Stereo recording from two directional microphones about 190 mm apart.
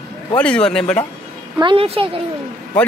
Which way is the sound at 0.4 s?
5° left (ahead or behind).